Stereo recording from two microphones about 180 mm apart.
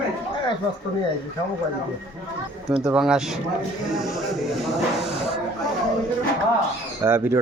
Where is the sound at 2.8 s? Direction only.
5° right (ahead or behind).